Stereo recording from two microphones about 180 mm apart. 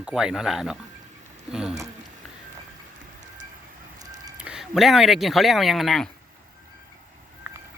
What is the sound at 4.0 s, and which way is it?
Fowl, 20° right (ahead or behind).